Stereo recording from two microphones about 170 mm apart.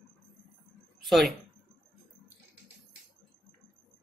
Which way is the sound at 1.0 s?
Centre (ahead or behind).